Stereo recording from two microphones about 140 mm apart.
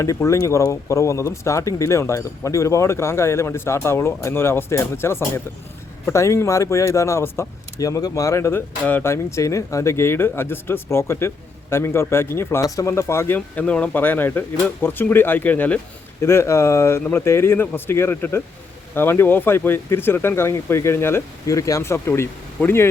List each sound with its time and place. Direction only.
0.0 s speech: 20° left (ahead or behind)